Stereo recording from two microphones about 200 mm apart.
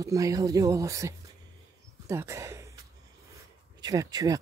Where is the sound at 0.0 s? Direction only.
15° right (ahead or behind).